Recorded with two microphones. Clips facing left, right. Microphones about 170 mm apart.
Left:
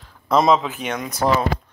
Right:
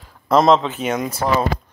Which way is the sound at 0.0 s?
Centre (ahead or behind).